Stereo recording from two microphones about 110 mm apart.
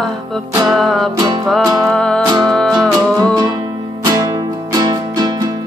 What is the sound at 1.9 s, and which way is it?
Music, 5° left (ahead or behind).